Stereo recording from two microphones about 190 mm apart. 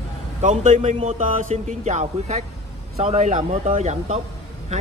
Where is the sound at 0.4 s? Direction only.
40° right (ahead or behind).